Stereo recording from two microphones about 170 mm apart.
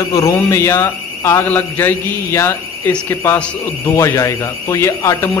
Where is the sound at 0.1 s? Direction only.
15° left (ahead or behind).